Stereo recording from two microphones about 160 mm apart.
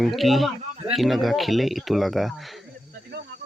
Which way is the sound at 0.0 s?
Centre (ahead or behind).